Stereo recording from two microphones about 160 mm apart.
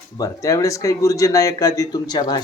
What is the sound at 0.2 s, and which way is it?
Speech, 20° left (ahead or behind).